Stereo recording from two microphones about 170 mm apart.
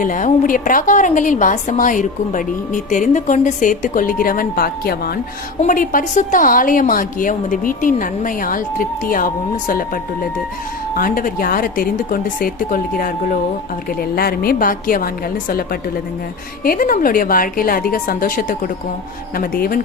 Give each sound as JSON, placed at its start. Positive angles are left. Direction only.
{"t": 0.0, "sound": "a woman's voice", "side_deg": 50}